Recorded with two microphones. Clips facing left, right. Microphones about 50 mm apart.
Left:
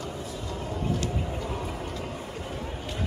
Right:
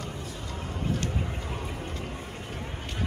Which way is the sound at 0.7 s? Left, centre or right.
Right.